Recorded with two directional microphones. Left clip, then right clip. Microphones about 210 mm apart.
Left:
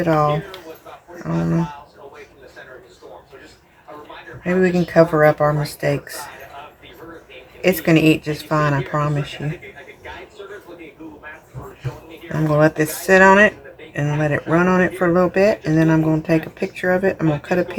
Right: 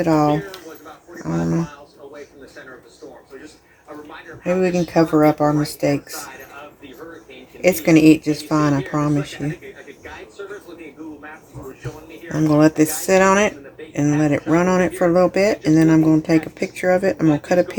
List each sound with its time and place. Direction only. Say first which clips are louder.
0.0 s speech: even; 35° right (ahead or behind)
4.4 s speech: left 1 dB; 25° right (ahead or behind)
7.9 s speech: right 4 dB; 25° right (ahead or behind)
12.3 s speech: right 1 dB; 25° right (ahead or behind)